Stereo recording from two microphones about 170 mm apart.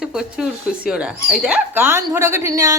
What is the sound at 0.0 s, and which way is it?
Speech, 5° right (ahead or behind).